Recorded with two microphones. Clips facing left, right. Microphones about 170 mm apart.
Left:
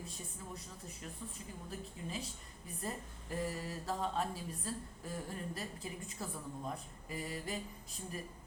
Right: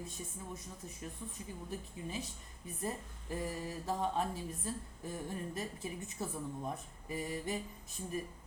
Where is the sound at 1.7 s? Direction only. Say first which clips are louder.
Even; 20° right (ahead or behind).